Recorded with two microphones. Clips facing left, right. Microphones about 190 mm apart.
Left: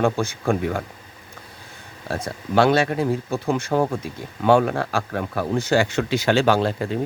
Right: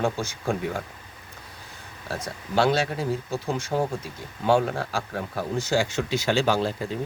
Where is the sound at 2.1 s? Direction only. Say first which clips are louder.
Left 5 dB; 55° left (ahead or behind).